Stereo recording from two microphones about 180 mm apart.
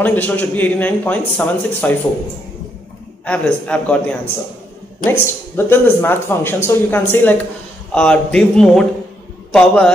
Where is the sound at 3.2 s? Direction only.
5° left (ahead or behind).